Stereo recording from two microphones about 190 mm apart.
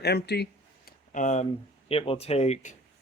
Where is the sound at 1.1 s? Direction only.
40° left (ahead or behind).